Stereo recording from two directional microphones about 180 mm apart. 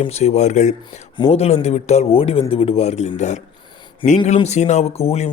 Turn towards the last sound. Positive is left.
turn(degrees=35)  # may be behind; listen again after turning